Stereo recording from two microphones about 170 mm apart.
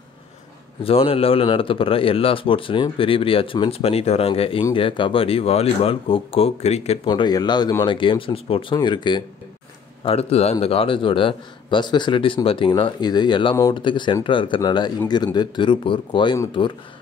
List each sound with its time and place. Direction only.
0.8 s speech: 35° left (ahead or behind)
7.1 s speech: 25° left (ahead or behind)
10.0 s speech: 35° left (ahead or behind)